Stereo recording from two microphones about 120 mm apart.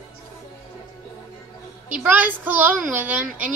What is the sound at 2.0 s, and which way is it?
A woman's voice, 15° right (ahead or behind).